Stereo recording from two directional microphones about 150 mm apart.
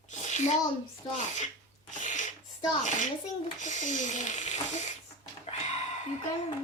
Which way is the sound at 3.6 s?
55° left (ahead or behind).